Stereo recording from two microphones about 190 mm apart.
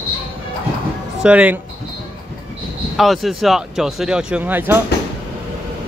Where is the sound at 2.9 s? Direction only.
Centre (ahead or behind).